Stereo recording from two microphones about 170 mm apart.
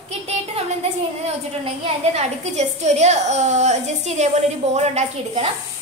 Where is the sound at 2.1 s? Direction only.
40° right (ahead or behind).